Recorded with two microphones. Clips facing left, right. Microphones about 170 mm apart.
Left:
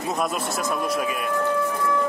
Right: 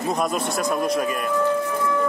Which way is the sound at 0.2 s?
Centre (ahead or behind).